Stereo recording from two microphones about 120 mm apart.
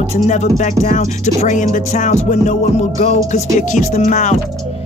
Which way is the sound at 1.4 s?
90° left.